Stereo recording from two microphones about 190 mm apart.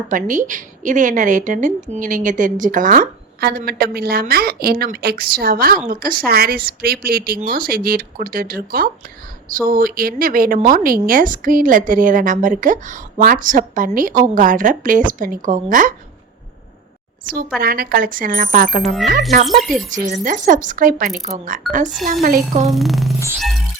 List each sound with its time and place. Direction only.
0.1 s a woman's voice: 45° right (ahead or behind)
17.6 s a woman's voice: 50° right (ahead or behind)
19.5 s a woman's voice: centre (ahead or behind)
19.9 s a woman's voice: 45° right (ahead or behind)
22.7 s a woman's voice: centre (ahead or behind)